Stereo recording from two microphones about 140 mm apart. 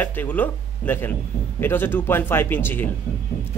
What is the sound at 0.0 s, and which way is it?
Speech, 15° left (ahead or behind).